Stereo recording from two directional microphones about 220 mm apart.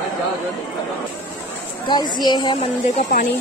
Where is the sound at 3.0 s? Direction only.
35° left (ahead or behind).